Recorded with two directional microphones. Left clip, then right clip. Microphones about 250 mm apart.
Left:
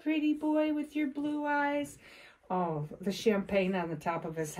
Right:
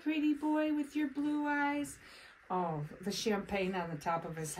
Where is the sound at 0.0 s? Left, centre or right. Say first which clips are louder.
Left 3 dB; centre.